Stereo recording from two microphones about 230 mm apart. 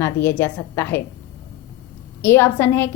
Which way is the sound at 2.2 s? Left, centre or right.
Centre.